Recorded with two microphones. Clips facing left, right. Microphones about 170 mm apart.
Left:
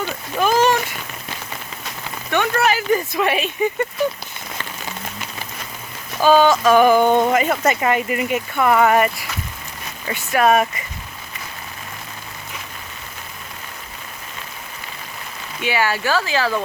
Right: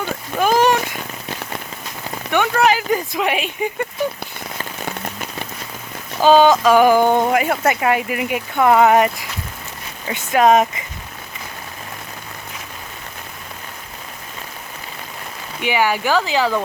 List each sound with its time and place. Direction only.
0.0 s a sound: 15° right (ahead or behind)
2.3 s speech: 15° right (ahead or behind)
6.2 s speech: 15° right (ahead or behind)
15.6 s speech: 15° right (ahead or behind)